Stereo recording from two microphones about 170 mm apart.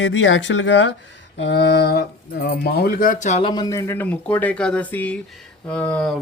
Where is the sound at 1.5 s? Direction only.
75° left (ahead or behind); by 3.4 s 45° left (ahead or behind).